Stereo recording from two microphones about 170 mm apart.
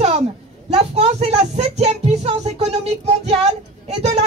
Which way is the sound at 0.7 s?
40° right (ahead or behind).